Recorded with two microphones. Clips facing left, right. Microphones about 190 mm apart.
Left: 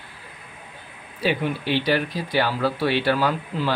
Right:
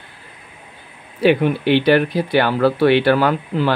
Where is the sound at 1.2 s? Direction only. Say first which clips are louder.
Right 9 dB; 60° right (ahead or behind).